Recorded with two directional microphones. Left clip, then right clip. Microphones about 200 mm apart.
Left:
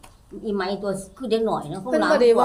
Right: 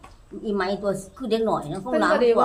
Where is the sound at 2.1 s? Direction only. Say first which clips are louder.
Left 3 dB; 50° left (ahead or behind).